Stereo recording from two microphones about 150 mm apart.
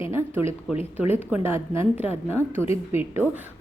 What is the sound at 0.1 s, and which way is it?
A woman's voice, 15° right (ahead or behind).